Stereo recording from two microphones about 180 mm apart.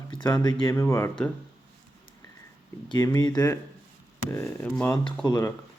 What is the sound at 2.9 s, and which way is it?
Speech, 20° left (ahead or behind).